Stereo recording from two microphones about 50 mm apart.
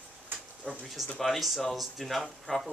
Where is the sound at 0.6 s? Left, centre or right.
Left.